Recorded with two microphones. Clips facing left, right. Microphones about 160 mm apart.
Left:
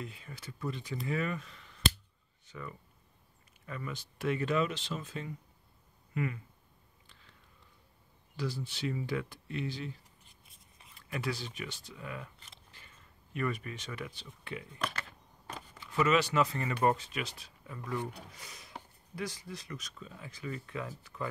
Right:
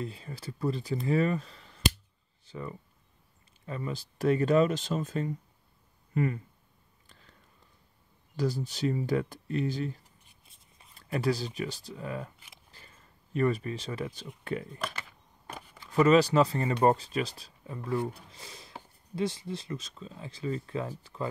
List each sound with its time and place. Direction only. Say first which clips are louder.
0.0 s speech: right 7 dB; 35° right (ahead or behind)
7.1 s whispering: right 4 dB; 45° right (ahead or behind)
8.4 s speech: right 7 dB; 40° right (ahead or behind)
12.7 s a sound: right 2 dB; 35° right (ahead or behind)
14.4 s speech: right 8 dB; 45° right (ahead or behind)
15.8 s speech: right 7 dB; 35° right (ahead or behind)